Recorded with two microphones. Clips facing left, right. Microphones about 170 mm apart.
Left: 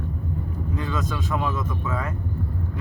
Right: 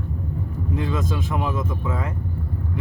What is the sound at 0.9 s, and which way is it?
Speech, 25° right (ahead or behind).